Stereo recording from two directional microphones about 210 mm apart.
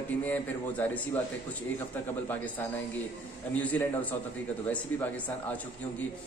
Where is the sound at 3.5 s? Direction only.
10° left (ahead or behind).